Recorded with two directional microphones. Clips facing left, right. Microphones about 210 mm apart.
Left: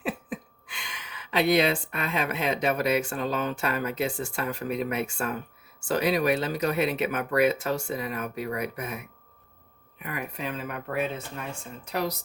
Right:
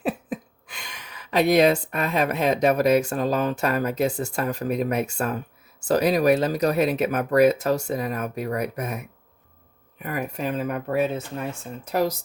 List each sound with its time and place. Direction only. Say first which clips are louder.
0.0 s speech: right 5 dB; 40° right (ahead or behind)